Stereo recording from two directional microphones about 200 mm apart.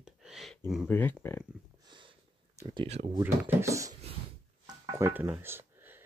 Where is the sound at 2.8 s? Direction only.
30° right (ahead or behind).